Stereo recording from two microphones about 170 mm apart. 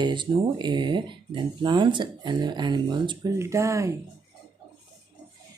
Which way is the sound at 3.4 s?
15° right (ahead or behind).